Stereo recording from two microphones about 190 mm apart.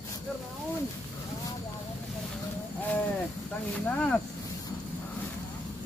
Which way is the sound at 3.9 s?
10° left (ahead or behind).